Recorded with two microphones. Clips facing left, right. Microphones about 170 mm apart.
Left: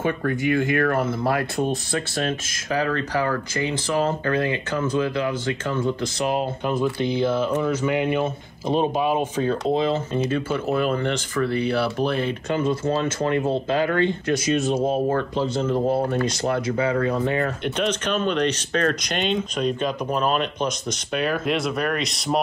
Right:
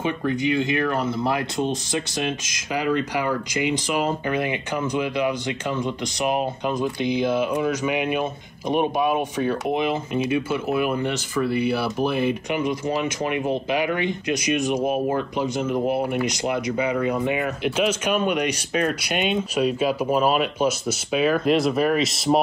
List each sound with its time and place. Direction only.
0.0 s speech: 20° right (ahead or behind); by 22.4 s centre (ahead or behind)